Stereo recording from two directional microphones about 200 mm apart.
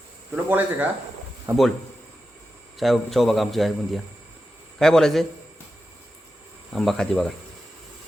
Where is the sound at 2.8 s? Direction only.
Centre (ahead or behind).